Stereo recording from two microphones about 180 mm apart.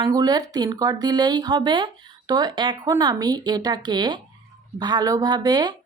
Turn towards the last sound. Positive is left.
turn(degrees=-20)  # may be behind; listen again after turning